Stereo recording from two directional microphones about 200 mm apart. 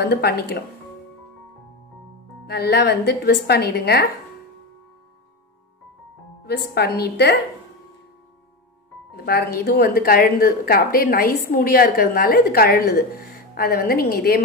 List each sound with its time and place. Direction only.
0.0 s a woman's voice: 55° left (ahead or behind)
2.4 s a woman's voice: 55° left (ahead or behind)
6.4 s a woman's voice: 55° left (ahead or behind)
9.1 s a woman's voice: 50° left (ahead or behind)